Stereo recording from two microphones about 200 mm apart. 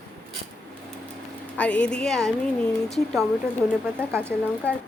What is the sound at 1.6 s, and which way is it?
A woman's voice, 5° left (ahead or behind).